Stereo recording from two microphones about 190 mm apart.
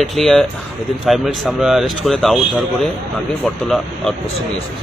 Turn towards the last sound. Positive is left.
turn(degrees=0)  # may be behind; listen again after turning